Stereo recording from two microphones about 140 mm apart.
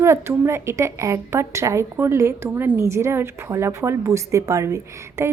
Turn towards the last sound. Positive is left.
turn(degrees=-20)  # may be behind; listen again after turning